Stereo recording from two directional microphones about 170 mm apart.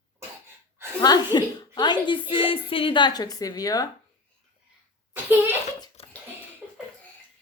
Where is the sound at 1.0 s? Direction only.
25° left (ahead or behind).